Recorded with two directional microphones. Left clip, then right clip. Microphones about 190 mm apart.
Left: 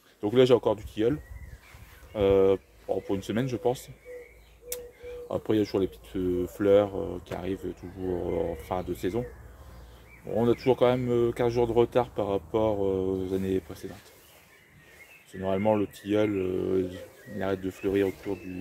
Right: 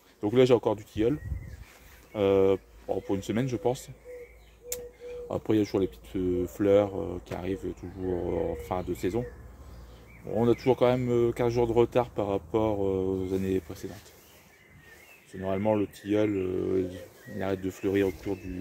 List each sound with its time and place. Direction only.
0.2 s speech: 5° right (ahead or behind)
5.3 s speech: 5° right (ahead or behind)
10.2 s speech: 5° right (ahead or behind)
15.4 s speech: 10° left (ahead or behind)
17.5 s speech: 10° right (ahead or behind)